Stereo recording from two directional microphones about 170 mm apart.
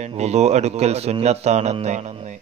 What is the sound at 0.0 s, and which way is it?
A man's voice, 40° right (ahead or behind).